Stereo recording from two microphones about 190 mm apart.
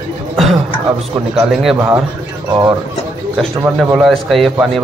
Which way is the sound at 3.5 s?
5° right (ahead or behind).